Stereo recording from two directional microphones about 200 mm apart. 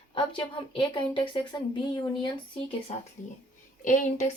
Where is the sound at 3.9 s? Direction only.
40° left (ahead or behind).